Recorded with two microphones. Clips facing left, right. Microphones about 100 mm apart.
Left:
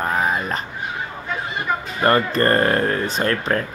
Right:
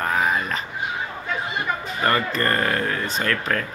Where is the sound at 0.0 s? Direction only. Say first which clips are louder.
Left 1 dB; 10° left (ahead or behind).